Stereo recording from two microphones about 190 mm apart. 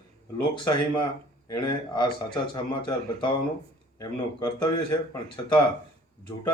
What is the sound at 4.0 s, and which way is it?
Speech, 20° left (ahead or behind).